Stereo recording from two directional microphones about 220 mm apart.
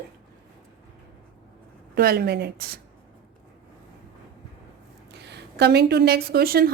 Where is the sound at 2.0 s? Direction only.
45° right (ahead or behind).